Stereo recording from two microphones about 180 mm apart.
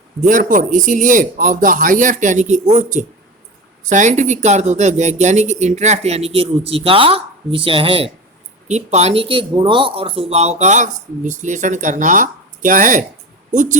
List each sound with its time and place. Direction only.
0.2 s a man's voice: 45° right (ahead or behind)